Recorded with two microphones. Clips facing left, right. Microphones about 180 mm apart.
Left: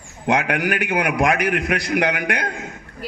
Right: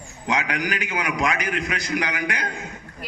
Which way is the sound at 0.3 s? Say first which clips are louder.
Left 5 dB; 55° left (ahead or behind).